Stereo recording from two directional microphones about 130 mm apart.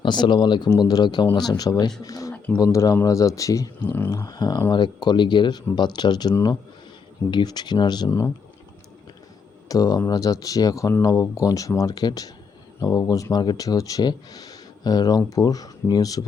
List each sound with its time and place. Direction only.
0.0 s speech: 35° left (ahead or behind)
9.6 s speech: 30° left (ahead or behind)